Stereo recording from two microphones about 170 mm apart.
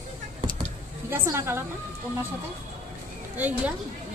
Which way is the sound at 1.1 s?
15° right (ahead or behind).